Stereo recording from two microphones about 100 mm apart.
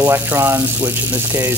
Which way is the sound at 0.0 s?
25° right (ahead or behind).